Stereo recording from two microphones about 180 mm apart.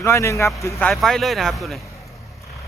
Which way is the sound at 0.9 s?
Centre (ahead or behind).